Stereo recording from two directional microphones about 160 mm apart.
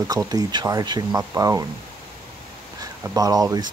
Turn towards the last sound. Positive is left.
turn(degrees=-25)  # may be behind; listen again after turning